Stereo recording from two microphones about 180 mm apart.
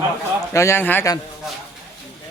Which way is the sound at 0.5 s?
15° left (ahead or behind).